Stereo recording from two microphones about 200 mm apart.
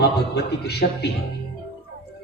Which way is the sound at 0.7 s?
55° left (ahead or behind).